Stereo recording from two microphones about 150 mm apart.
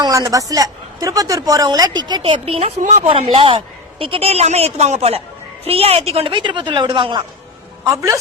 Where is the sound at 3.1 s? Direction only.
35° right (ahead or behind).